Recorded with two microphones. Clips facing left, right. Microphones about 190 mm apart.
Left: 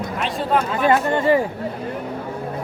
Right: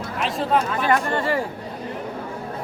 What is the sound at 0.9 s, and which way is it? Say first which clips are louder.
Speech: left 6 dB; 20° left (ahead or behind).